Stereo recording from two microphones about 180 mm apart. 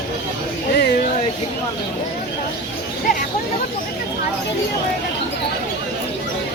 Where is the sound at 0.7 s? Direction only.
60° left (ahead or behind).